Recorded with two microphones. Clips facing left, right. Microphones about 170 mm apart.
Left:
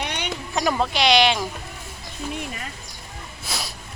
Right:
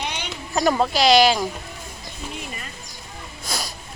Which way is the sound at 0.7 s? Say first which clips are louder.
Right 3 dB; 5° right (ahead or behind).